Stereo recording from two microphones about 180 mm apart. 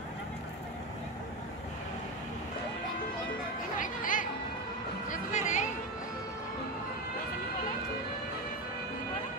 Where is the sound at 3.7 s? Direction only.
45° left (ahead or behind).